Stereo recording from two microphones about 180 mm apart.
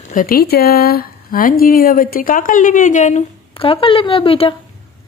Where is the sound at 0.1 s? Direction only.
50° left (ahead or behind); by 4.6 s 30° left (ahead or behind).